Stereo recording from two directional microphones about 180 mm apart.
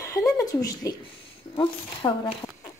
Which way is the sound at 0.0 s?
15° left (ahead or behind).